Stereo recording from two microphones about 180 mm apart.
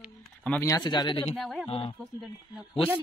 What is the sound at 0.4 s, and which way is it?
Speech, 10° left (ahead or behind).